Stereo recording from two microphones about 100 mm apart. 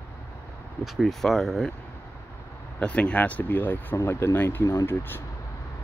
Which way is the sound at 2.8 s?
10° left (ahead or behind).